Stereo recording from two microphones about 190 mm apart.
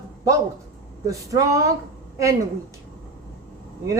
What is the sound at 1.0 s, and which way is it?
Speech, 15° right (ahead or behind).